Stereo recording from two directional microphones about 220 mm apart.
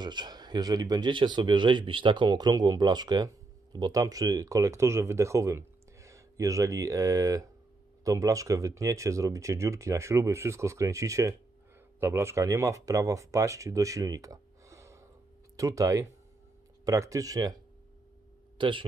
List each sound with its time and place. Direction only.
0.0 s speech: 20° right (ahead or behind)
18.6 s a man's voice: 20° right (ahead or behind)